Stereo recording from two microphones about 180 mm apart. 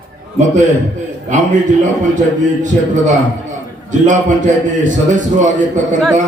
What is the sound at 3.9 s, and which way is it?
A man's voice, 45° right (ahead or behind).